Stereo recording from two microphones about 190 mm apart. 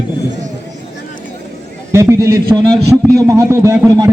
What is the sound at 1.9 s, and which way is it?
A man's voice, 15° right (ahead or behind).